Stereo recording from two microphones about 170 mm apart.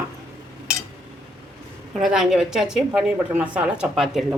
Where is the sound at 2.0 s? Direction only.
Centre (ahead or behind).